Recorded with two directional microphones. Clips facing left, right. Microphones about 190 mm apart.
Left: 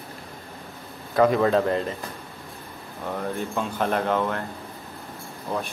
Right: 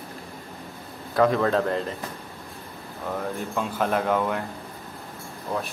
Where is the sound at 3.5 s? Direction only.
5° right (ahead or behind).